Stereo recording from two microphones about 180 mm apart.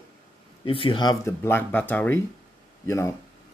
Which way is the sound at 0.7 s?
30° left (ahead or behind).